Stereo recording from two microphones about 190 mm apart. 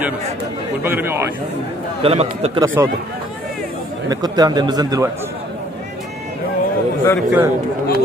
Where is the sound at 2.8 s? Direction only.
15° right (ahead or behind).